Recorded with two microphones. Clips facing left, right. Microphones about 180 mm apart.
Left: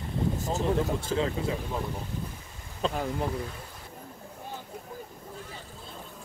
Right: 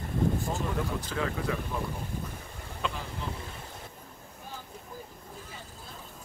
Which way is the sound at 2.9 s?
50° left (ahead or behind).